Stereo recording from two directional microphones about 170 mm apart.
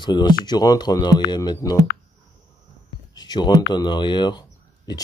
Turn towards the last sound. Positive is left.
turn(degrees=25)  # may be behind; listen again after turning